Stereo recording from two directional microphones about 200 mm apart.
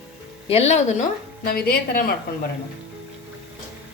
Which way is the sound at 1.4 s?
50° left (ahead or behind).